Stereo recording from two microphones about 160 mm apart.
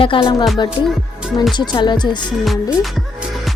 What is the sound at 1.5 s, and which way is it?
Speech, 30° left (ahead or behind).